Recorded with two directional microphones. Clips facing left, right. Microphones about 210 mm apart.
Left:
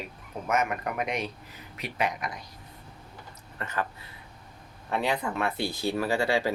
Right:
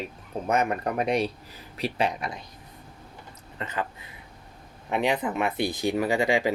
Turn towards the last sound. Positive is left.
turn(degrees=-15)  # may be behind; listen again after turning